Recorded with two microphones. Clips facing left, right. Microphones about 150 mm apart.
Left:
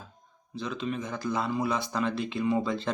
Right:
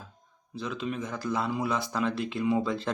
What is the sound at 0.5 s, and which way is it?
Speech, 5° right (ahead or behind).